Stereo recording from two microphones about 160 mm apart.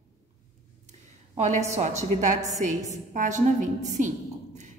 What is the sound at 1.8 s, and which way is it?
A woman's voice, 50° right (ahead or behind).